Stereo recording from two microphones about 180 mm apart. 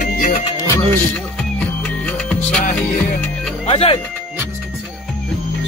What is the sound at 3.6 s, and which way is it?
Speech, 30° left (ahead or behind).